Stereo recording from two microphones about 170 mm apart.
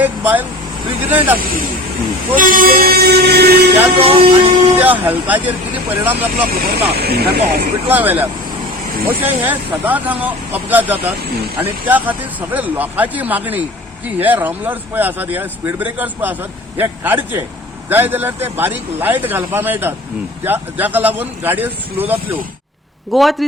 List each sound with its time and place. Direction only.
0.0 s vehicle: 10° right (ahead or behind)
2.3 s speech: 55° right (ahead or behind); by 3.7 s 70° right (ahead or behind)
3.9 s speech: 35° right (ahead or behind)
4.8 s speech: 10° right (ahead or behind)
6.5 s speech: 65° right (ahead or behind)
7.9 s speech: 10° right (ahead or behind)
23.1 s a man's voice: centre (ahead or behind)